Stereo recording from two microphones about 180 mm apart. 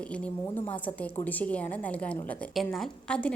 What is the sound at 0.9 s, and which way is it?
A woman's voice, 10° left (ahead or behind).